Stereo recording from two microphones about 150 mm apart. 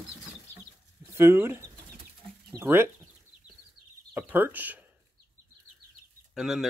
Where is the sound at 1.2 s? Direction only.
15° right (ahead or behind).